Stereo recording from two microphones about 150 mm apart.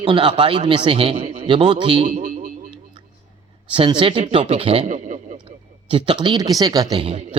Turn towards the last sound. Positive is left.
turn(degrees=-30)  # may be behind; listen again after turning